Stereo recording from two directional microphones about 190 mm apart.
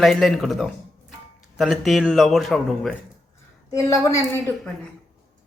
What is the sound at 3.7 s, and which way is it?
Speech, 15° left (ahead or behind).